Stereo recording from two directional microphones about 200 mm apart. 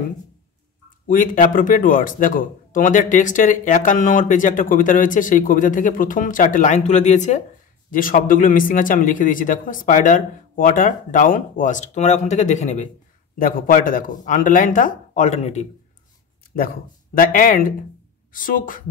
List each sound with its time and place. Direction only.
1.0 s speech: 40° left (ahead or behind)
16.5 s speech: 45° left (ahead or behind)